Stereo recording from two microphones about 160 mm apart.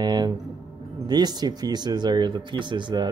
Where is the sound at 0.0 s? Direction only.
25° right (ahead or behind).